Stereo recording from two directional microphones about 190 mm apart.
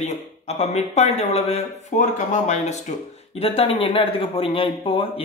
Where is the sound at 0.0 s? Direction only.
35° left (ahead or behind).